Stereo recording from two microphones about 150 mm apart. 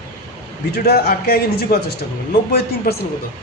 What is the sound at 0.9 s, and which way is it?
Speech, 90° left.